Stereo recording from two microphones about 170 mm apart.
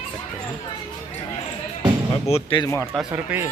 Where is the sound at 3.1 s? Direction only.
15° right (ahead or behind).